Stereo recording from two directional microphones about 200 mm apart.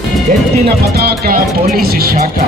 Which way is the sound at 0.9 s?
50° right (ahead or behind).